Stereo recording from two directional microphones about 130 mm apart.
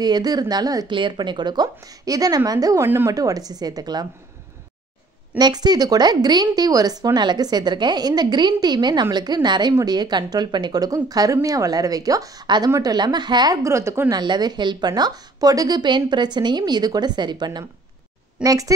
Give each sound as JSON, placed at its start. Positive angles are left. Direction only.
{"t": 0.0, "sound": "a woman's voice", "side_deg": -30}
{"t": 5.4, "sound": "a woman's voice", "side_deg": -30}
{"t": 14.2, "sound": "a woman's voice", "side_deg": -35}